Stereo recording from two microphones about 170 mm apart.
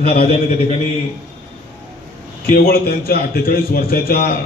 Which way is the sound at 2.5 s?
60° left (ahead or behind).